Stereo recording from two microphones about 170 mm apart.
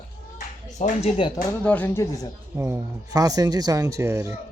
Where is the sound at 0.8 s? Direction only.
35° left (ahead or behind).